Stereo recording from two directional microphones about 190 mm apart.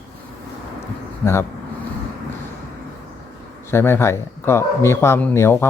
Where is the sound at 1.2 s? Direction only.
15° left (ahead or behind).